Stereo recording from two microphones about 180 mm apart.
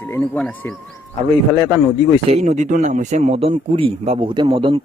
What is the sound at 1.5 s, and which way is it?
Speech, 20° right (ahead or behind).